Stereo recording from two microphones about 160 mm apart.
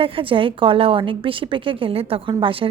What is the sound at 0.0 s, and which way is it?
Speech, 35° right (ahead or behind).